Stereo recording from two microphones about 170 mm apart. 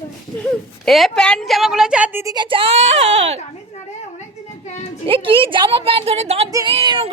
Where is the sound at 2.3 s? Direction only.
30° right (ahead or behind).